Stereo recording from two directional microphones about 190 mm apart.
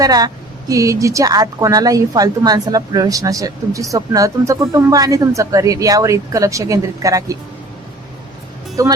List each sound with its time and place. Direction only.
0.0 s a woman's voice: 20° right (ahead or behind)
8.8 s a woman's voice: 15° right (ahead or behind)